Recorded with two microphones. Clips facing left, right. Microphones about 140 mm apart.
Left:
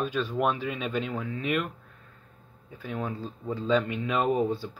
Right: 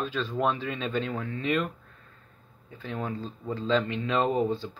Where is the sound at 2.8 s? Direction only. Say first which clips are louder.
Even; 10° left (ahead or behind).